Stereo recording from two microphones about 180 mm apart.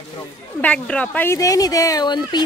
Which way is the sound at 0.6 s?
5° left (ahead or behind).